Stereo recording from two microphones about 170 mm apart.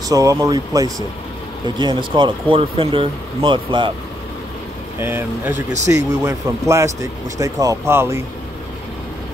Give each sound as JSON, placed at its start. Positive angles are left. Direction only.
{"t": 0.1, "sound": "speech", "side_deg": -20}
{"t": 5.0, "sound": "speech", "side_deg": -15}